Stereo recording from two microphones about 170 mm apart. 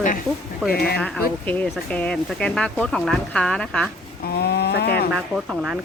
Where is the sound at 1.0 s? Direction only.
5° left (ahead or behind).